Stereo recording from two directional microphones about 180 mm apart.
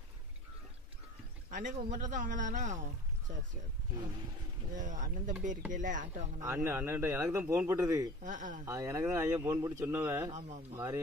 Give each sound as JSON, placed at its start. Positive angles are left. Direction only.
{"t": 1.5, "sound": "a man's voice", "side_deg": -45}
{"t": 4.7, "sound": "speech", "side_deg": -45}
{"t": 6.4, "sound": "speech", "side_deg": -15}
{"t": 8.2, "sound": "speech", "side_deg": -45}
{"t": 8.6, "sound": "speech", "side_deg": -15}